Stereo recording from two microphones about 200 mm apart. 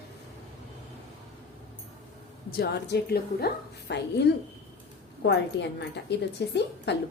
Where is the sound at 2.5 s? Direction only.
55° left (ahead or behind).